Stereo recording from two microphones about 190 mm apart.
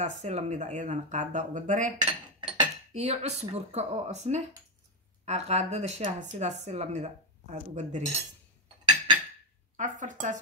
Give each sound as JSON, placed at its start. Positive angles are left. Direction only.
{"t": 0.0, "sound": "speech", "side_deg": -40}
{"t": 8.8, "sound": "cutlery", "side_deg": -25}
{"t": 9.8, "sound": "speech", "side_deg": -40}